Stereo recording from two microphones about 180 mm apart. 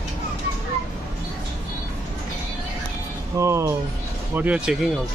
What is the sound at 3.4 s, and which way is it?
Speech, 15° right (ahead or behind).